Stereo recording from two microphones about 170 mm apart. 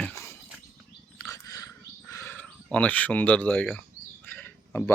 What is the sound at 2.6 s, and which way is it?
Speech, 10° left (ahead or behind).